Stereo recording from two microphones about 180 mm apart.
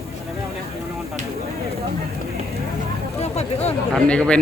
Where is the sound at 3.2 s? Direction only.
35° left (ahead or behind).